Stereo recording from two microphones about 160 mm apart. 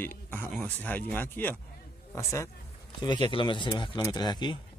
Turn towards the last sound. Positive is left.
turn(degrees=25)  # may be behind; listen again after turning